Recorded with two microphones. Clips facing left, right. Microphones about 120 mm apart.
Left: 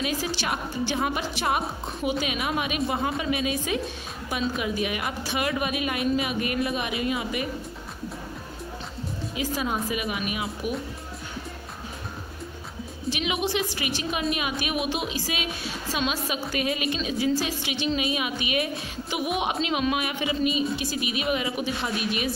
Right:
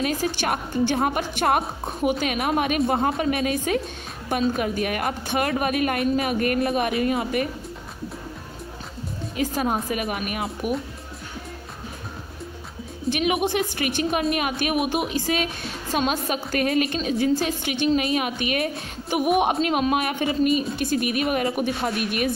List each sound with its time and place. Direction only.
0.0 s a woman's voice: 50° right (ahead or behind)
9.3 s a woman's voice: 50° right (ahead or behind)
13.1 s a woman's voice: 55° right (ahead or behind)